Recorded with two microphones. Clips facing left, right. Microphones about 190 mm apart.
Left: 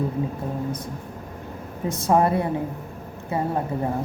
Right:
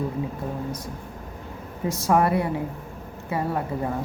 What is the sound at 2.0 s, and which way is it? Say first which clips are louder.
A woman's voice: left 1 dB; 25° left (ahead or behind).